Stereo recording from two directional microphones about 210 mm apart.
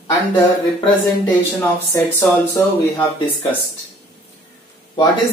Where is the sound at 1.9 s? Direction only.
15° left (ahead or behind).